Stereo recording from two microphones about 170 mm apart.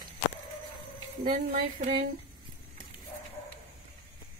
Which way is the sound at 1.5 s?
50° right (ahead or behind).